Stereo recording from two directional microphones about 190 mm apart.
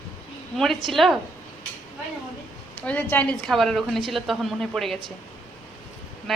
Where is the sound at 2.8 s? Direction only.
5° left (ahead or behind).